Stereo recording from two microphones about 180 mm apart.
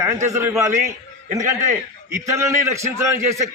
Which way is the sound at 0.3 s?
15° right (ahead or behind).